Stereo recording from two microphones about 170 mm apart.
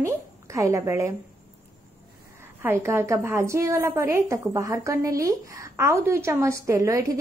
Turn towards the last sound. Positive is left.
turn(degrees=-20)  # may be behind; listen again after turning